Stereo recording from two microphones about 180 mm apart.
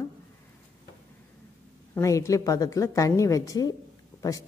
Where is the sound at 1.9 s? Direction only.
15° left (ahead or behind).